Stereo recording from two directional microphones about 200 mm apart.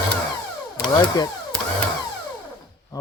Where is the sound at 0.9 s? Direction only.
20° left (ahead or behind).